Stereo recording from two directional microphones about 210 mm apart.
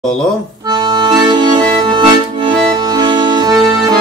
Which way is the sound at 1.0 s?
20° right (ahead or behind).